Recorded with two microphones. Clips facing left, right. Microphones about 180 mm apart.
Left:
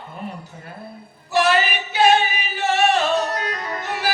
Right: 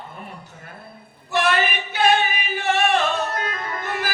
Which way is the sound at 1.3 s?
55° right (ahead or behind).